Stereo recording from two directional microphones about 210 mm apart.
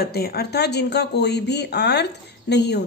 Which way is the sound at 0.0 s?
50° left (ahead or behind).